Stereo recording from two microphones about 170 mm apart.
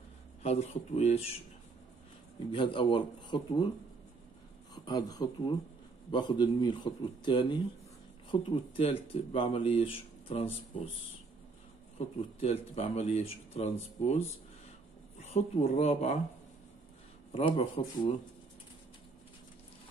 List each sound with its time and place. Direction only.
0.4 s speech: 40° left (ahead or behind)
2.5 s a man's voice: 30° left (ahead or behind)
4.7 s a man's voice: 25° left (ahead or behind)
12.0 s speech: 40° left (ahead or behind)
15.1 s speech: 40° left (ahead or behind)
17.3 s speech: 35° left (ahead or behind)